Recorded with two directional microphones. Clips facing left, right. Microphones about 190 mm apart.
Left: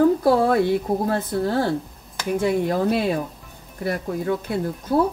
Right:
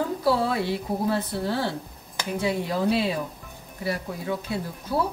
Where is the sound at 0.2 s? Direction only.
50° left (ahead or behind).